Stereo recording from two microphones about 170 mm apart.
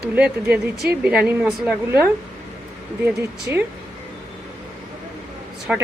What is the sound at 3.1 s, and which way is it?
Speech, 10° right (ahead or behind).